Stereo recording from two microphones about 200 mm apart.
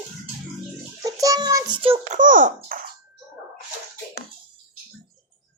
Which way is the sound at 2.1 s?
40° right (ahead or behind).